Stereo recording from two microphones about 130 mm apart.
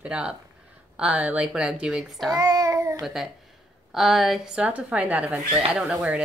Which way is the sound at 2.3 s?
25° right (ahead or behind).